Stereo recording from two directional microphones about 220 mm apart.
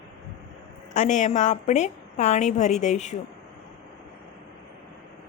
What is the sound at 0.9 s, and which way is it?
A woman's voice, 35° left (ahead or behind).